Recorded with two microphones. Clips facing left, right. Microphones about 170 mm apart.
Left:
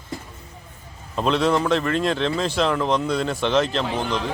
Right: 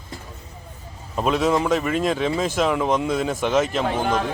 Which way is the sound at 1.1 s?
5° right (ahead or behind).